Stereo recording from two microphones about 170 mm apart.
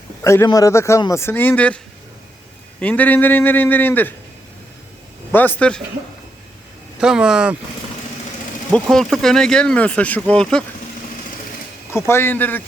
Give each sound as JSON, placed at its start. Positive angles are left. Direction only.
{"t": 0.4, "sound": "speech", "side_deg": 20}
{"t": 2.8, "sound": "speech", "side_deg": 10}
{"t": 5.3, "sound": "speech", "side_deg": 10}
{"t": 7.0, "sound": "speech", "side_deg": -5}
{"t": 8.7, "sound": "speech", "side_deg": 0}
{"t": 11.9, "sound": "speech", "side_deg": 15}